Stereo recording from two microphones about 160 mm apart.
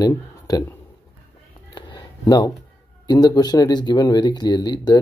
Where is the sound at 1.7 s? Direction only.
25° left (ahead or behind).